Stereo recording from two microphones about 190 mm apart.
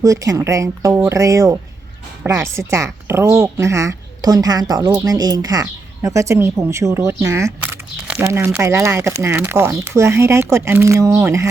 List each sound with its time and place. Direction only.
0.0 s a woman's voice: 15° right (ahead or behind)